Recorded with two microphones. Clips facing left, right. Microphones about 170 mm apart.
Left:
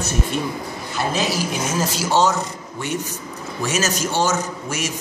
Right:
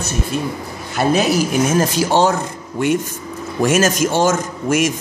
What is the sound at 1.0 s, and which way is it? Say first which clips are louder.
A woman's voice: right 7 dB; 60° right (ahead or behind).